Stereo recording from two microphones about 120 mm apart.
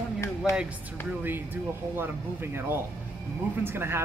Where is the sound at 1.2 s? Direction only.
15° right (ahead or behind).